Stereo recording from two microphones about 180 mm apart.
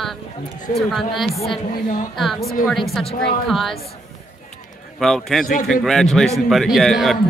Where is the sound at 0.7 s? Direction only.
45° left (ahead or behind).